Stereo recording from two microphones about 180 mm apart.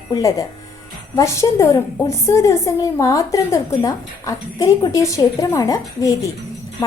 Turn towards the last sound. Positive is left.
turn(degrees=20)  # may be behind; listen again after turning